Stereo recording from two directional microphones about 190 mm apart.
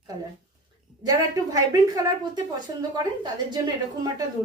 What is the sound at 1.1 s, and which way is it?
A woman's voice, 20° right (ahead or behind).